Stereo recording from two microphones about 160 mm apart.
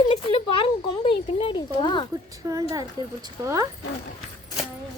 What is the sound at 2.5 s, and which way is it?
A woman's voice, 20° right (ahead or behind).